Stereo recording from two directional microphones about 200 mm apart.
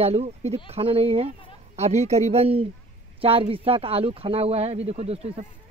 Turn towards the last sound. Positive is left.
turn(degrees=-30)  # may be behind; listen again after turning